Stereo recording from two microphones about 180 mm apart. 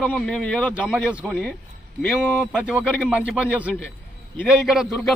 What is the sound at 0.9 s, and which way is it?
Speech, 5° right (ahead or behind).